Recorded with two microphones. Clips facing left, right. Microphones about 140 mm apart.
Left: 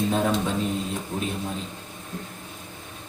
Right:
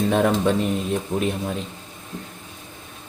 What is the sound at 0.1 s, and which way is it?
Speech, 70° right (ahead or behind).